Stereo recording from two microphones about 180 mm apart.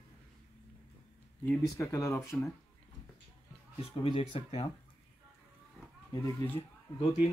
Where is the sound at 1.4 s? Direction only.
15° left (ahead or behind).